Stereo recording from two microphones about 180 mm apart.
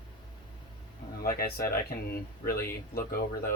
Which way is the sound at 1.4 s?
55° left (ahead or behind).